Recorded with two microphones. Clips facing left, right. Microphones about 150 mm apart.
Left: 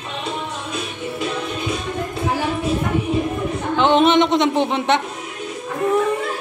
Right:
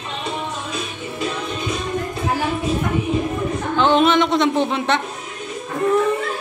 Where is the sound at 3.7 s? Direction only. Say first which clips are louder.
Left 1 dB; 20° left (ahead or behind).